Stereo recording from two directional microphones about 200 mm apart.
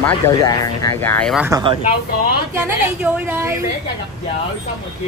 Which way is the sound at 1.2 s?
Centre (ahead or behind).